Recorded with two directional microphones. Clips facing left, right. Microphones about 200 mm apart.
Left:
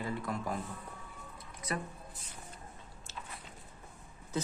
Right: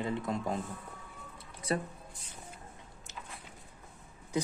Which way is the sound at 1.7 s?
30° right (ahead or behind).